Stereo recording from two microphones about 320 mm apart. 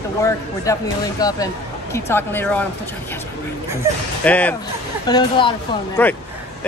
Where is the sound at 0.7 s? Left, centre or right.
Centre.